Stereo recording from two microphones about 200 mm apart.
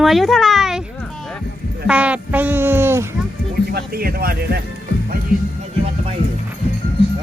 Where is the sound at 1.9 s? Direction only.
5° right (ahead or behind).